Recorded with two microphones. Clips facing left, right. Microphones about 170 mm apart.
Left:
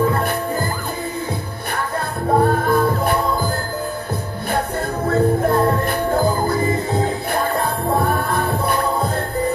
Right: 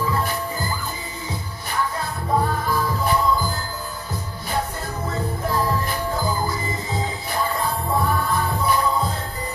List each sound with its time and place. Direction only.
0.0 s music: 60° left (ahead or behind)
1.8 s music: 60° left (ahead or behind)